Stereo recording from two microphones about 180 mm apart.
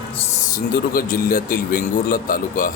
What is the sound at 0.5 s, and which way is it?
Speech, 50° left (ahead or behind).